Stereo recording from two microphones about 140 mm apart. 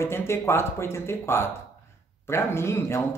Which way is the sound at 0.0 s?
20° left (ahead or behind).